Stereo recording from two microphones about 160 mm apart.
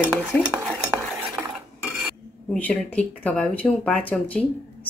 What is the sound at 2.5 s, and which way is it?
Speech, 10° left (ahead or behind).